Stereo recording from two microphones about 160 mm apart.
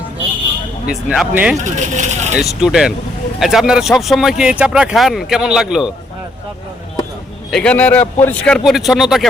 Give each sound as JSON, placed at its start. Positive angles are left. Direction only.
{"t": 0.9, "sound": "speech", "side_deg": -5}
{"t": 1.5, "sound": "speech", "side_deg": -50}
{"t": 2.4, "sound": "speech", "side_deg": 0}
{"t": 7.5, "sound": "speech", "side_deg": 5}